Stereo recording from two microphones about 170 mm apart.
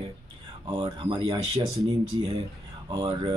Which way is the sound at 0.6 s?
30° right (ahead or behind).